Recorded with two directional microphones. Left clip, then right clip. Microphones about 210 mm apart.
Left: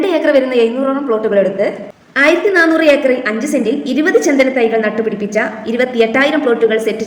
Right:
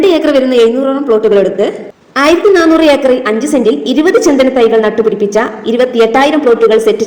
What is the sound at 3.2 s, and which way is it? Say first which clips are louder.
A woman's voice: right 5 dB; 20° right (ahead or behind).